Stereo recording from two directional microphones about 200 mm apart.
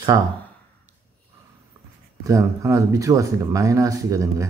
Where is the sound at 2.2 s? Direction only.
15° right (ahead or behind).